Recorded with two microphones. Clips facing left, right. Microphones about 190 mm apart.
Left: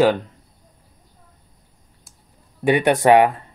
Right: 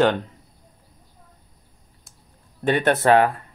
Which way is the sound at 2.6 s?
10° left (ahead or behind).